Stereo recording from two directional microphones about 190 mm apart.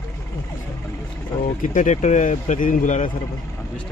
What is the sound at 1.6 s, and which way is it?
Speech, 40° left (ahead or behind).